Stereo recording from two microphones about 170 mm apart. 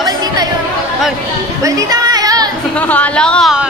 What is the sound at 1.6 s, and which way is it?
Chatter, 20° right (ahead or behind).